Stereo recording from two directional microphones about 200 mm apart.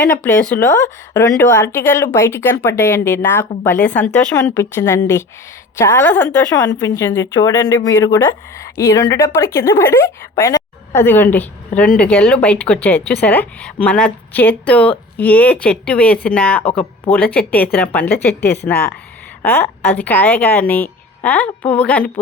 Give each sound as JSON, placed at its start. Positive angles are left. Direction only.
{"t": 0.0, "sound": "a woman's voice", "side_deg": 10}